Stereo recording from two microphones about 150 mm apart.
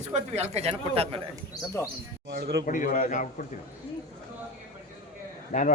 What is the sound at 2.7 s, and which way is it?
Speech, 60° left (ahead or behind).